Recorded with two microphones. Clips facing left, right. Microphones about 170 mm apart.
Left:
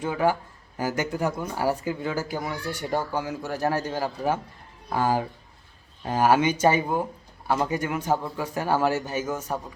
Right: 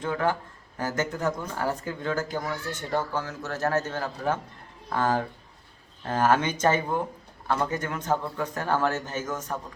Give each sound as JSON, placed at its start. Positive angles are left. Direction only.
{"t": 0.0, "sound": "speech", "side_deg": 10}